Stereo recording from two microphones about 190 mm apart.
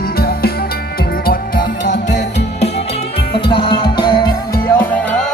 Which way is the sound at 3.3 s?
25° left (ahead or behind).